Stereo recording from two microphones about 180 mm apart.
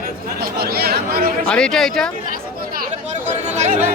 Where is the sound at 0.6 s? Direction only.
60° right (ahead or behind).